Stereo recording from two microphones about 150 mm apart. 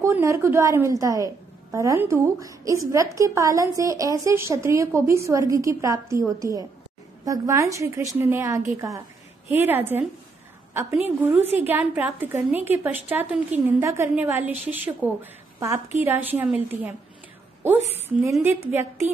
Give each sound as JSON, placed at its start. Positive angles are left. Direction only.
{"t": 0.0, "sound": "a woman's voice", "side_deg": -20}
{"t": 17.9, "sound": "a woman's voice", "side_deg": -15}